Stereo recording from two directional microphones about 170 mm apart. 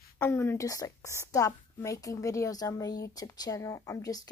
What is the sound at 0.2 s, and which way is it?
A woman's voice, 15° left (ahead or behind).